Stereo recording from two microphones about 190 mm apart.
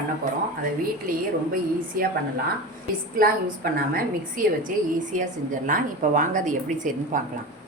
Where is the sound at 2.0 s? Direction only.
50° right (ahead or behind).